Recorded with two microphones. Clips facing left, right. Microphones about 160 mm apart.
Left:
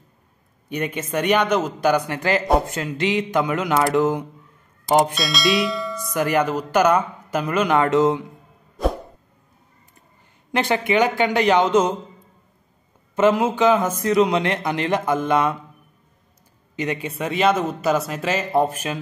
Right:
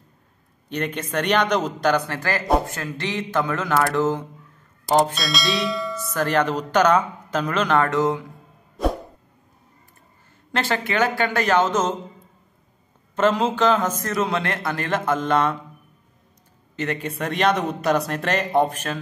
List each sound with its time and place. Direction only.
0.7 s a man's voice: 10° left (ahead or behind)
5.1 s speech: centre (ahead or behind)
5.9 s a man's voice: 15° left (ahead or behind)
10.5 s a man's voice: 15° left (ahead or behind)
13.1 s a man's voice: 10° left (ahead or behind)
16.7 s speech: 10° left (ahead or behind)